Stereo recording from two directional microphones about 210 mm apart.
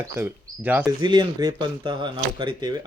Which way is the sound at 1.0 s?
20° right (ahead or behind).